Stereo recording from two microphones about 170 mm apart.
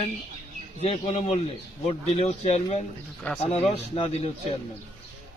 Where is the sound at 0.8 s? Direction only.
35° left (ahead or behind).